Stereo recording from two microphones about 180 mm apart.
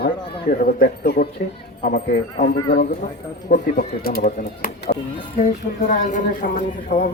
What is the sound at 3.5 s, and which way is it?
Speech, 50° left (ahead or behind).